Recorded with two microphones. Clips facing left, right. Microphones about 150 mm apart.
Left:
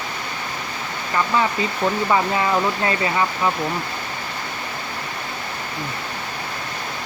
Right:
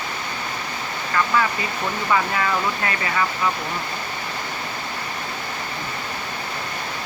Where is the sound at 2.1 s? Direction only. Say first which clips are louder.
Right 1 dB; 25° left (ahead or behind).